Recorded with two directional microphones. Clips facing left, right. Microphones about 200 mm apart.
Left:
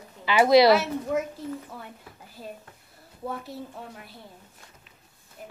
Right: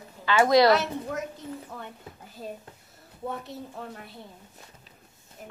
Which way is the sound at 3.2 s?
Centre (ahead or behind).